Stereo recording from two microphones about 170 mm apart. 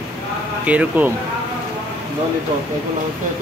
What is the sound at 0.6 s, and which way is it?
Speech, 10° right (ahead or behind).